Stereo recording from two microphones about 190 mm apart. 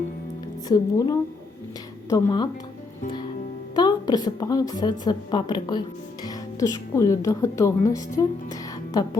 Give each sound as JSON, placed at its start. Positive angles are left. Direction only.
{"t": 0.7, "sound": "a woman's voice", "side_deg": 20}
{"t": 3.8, "sound": "a woman's voice", "side_deg": 20}